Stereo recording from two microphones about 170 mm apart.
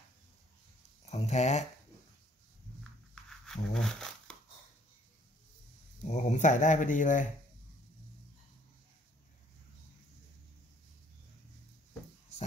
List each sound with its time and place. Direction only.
1.1 s speech: 40° left (ahead or behind)
3.3 s a sound: 5° left (ahead or behind)
6.0 s speech: 45° left (ahead or behind)